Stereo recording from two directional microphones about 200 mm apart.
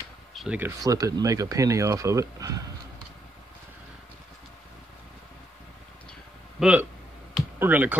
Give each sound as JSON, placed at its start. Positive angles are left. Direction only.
{"t": 0.3, "sound": "a sound", "side_deg": 0}
{"t": 0.8, "sound": "speech", "side_deg": -20}
{"t": 6.6, "sound": "speech", "side_deg": -5}